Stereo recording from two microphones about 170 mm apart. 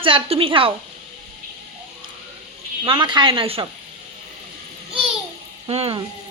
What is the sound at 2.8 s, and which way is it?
Speech, 30° right (ahead or behind).